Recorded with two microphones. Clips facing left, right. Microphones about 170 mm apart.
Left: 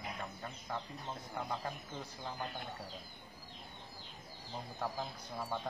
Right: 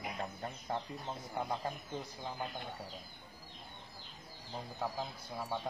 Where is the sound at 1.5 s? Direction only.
15° right (ahead or behind).